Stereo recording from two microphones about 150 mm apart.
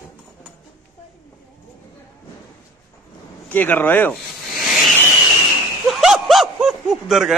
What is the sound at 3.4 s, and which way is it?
Speech, 10° left (ahead or behind).